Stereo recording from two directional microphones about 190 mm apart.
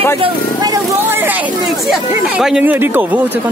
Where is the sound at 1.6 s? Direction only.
Centre (ahead or behind).